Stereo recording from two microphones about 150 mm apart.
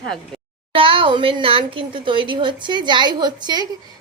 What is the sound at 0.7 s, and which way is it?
A woman's voice, 35° right (ahead or behind).